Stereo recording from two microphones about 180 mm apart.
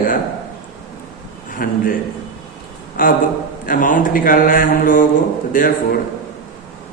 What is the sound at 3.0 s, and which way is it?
A man's voice, 50° left (ahead or behind).